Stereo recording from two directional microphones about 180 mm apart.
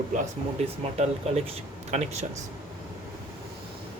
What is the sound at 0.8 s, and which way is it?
Speech, 35° right (ahead or behind).